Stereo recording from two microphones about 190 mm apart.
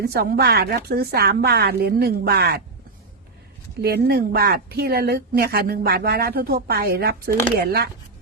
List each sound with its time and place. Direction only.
0.0 s speech: 55° right (ahead or behind)
3.8 s speech: 55° right (ahead or behind)